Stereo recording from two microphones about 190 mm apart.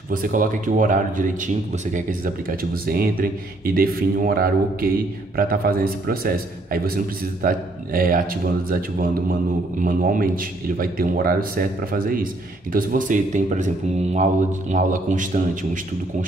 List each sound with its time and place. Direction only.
0.1 s a man's voice: 45° right (ahead or behind)